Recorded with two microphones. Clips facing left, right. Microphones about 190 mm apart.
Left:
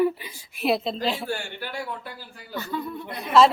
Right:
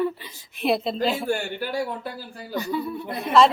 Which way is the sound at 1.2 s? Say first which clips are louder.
Right 5 dB; 40° right (ahead or behind).